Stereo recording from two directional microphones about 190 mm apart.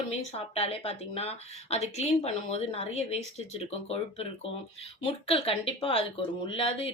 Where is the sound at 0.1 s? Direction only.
30° left (ahead or behind).